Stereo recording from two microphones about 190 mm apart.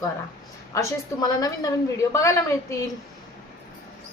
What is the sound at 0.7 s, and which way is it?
A woman's voice, 20° left (ahead or behind).